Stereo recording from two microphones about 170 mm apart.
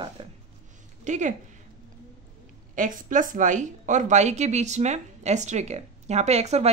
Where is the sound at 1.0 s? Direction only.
45° right (ahead or behind).